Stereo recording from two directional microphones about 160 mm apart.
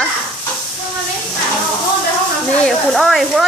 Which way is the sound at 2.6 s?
Centre (ahead or behind).